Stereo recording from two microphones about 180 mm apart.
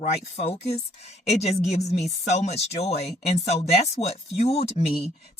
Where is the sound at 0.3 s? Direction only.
35° left (ahead or behind).